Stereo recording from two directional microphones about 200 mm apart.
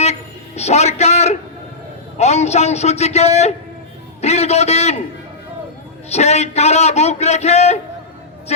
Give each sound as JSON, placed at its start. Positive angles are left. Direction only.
{"t": 0.0, "sound": "a sound", "side_deg": 35}
{"t": 2.1, "sound": "a man's voice", "side_deg": 35}
{"t": 6.1, "sound": "a man's voice", "side_deg": 35}